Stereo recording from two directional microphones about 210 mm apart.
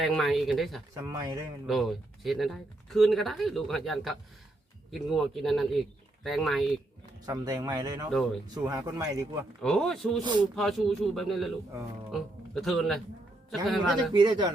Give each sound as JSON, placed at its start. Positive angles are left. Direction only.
{"t": 0.0, "sound": "speech", "side_deg": 0}
{"t": 1.0, "sound": "speech", "side_deg": -15}
{"t": 1.6, "sound": "speech", "side_deg": 0}
{"t": 7.3, "sound": "speech", "side_deg": -20}
{"t": 9.6, "sound": "speech", "side_deg": 0}
{"t": 10.2, "sound": "speech", "side_deg": -20}
{"t": 10.5, "sound": "speech", "side_deg": 0}
{"t": 14.1, "sound": "speech", "side_deg": -20}